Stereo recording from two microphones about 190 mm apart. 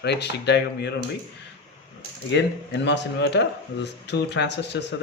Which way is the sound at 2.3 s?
65° left (ahead or behind).